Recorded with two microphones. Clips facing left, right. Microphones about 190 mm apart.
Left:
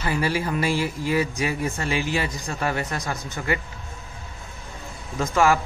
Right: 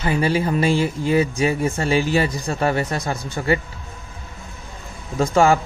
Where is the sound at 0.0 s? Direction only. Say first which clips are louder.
Right 5 dB; 20° right (ahead or behind).